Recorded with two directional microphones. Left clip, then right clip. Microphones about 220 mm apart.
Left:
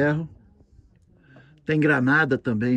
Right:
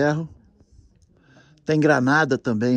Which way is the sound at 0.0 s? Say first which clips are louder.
Right 2 dB; 15° right (ahead or behind).